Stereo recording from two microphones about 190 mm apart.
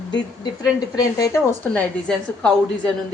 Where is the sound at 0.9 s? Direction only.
15° left (ahead or behind).